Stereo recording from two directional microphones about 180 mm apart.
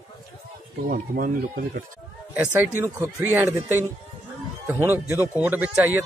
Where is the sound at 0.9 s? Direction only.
50° right (ahead or behind).